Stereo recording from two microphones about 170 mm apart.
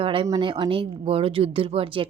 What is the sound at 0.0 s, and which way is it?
Speech, 30° right (ahead or behind).